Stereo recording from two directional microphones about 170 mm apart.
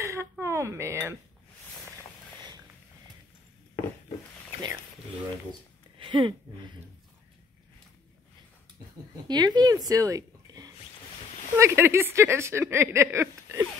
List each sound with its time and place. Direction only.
0.0 s a sound: 15° right (ahead or behind)
5.9 s speech: 30° right (ahead or behind)
9.3 s a woman's voice: 25° right (ahead or behind)